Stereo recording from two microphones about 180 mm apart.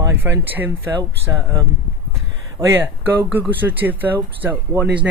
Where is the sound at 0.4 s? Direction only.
10° right (ahead or behind).